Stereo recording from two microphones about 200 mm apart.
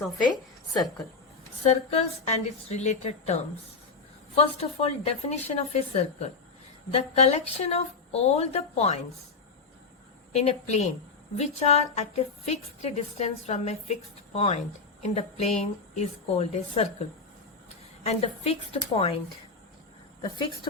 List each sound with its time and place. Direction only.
0.7 s a woman's voice: centre (ahead or behind)
1.6 s speech: 35° left (ahead or behind)
10.3 s speech: 35° left (ahead or behind)